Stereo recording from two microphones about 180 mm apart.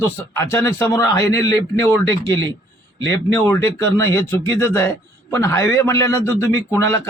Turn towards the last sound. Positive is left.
turn(degrees=15)  # may be behind; listen again after turning